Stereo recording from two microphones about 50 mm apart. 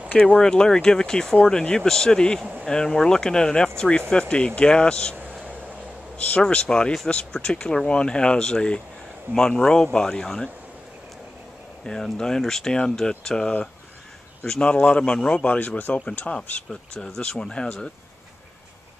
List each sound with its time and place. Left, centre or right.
0.3 s speech: centre
6.1 s speech: left
6.4 s speech: centre
11.8 s speech: centre
17.0 s speech: centre